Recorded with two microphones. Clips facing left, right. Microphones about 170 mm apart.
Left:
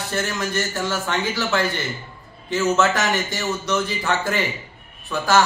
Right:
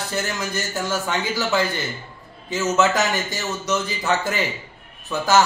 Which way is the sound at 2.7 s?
20° right (ahead or behind).